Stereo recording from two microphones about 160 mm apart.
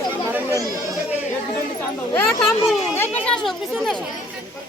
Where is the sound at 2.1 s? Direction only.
15° left (ahead or behind).